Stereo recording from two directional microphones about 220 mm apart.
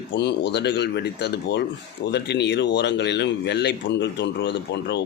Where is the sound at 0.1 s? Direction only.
50° left (ahead or behind).